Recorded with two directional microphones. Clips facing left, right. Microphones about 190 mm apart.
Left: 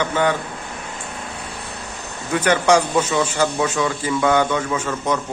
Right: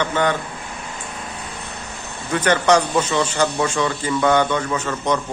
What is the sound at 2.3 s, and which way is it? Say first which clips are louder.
A man's voice: even; 10° left (ahead or behind).